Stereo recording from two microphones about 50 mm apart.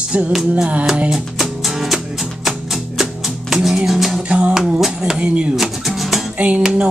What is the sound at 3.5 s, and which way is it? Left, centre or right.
Music, centre.